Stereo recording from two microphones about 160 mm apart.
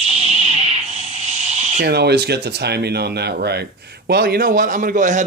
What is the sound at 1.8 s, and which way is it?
Speech, 90° right.